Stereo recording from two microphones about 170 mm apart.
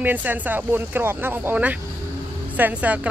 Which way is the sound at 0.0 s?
10° right (ahead or behind).